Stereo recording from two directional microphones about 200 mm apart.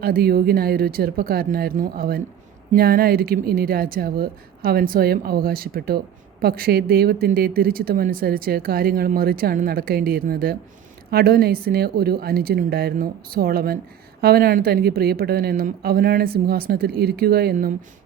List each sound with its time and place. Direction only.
0.0 s speech: 50° right (ahead or behind)